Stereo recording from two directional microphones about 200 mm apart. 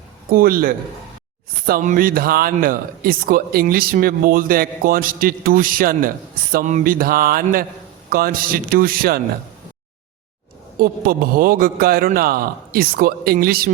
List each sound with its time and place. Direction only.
0.3 s speech: 45° right (ahead or behind)
10.8 s speech: 45° right (ahead or behind)